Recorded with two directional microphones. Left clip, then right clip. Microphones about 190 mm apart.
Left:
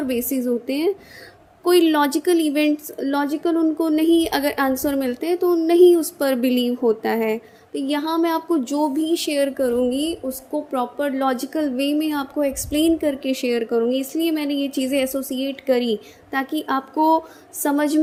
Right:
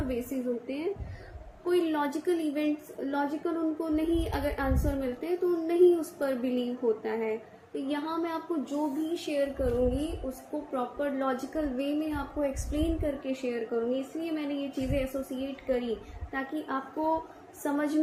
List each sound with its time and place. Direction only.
0.1 s a woman's voice: 70° left (ahead or behind); by 18.0 s 50° left (ahead or behind)